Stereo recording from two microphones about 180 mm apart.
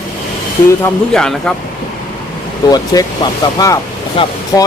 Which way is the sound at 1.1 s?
5° left (ahead or behind).